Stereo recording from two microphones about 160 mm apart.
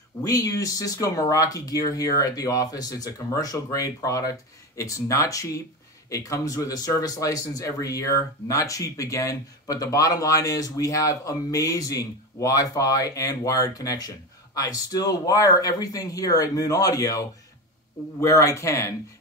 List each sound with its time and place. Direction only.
0.2 s speech: 20° left (ahead or behind)
18.2 s speech: 20° left (ahead or behind)